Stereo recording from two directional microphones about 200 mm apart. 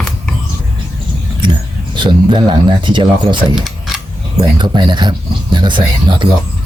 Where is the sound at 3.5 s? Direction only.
Centre (ahead or behind).